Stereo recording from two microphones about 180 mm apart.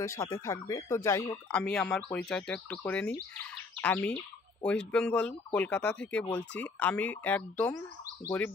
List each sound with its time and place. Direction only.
0.0 s speech: 15° left (ahead or behind)
1.5 s speech: 5° left (ahead or behind)
3.3 s bird vocalization: 5° left (ahead or behind)
4.6 s speech: 5° left (ahead or behind)